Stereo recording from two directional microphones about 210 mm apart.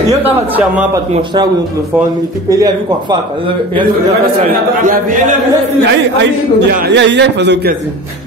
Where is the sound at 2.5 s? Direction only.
20° right (ahead or behind).